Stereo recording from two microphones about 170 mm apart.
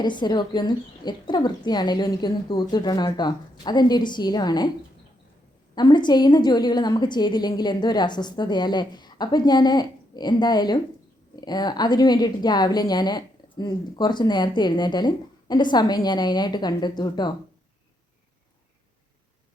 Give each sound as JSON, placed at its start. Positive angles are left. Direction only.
{"t": 0.0, "sound": "a woman's voice", "side_deg": 25}
{"t": 5.7, "sound": "a woman's voice", "side_deg": 25}